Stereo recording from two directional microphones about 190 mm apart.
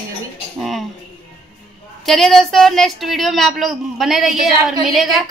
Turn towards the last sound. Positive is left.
turn(degrees=0)  # may be behind; listen again after turning